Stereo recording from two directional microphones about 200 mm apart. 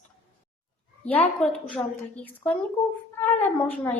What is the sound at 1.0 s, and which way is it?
A woman's voice, 5° left (ahead or behind).